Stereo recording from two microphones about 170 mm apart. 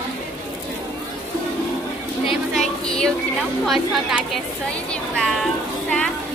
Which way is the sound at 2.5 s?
5° left (ahead or behind).